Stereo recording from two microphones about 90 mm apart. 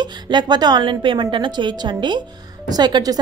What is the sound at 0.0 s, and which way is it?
A woman's voice, 55° right (ahead or behind).